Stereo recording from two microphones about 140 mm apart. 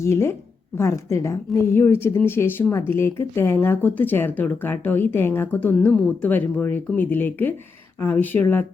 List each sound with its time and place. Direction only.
0.0 s a woman's voice: 20° left (ahead or behind)